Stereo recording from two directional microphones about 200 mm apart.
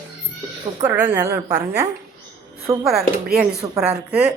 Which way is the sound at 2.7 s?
15° right (ahead or behind).